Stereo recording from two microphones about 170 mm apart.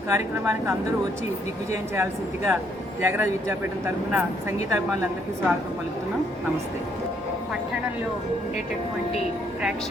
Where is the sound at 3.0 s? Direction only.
15° right (ahead or behind).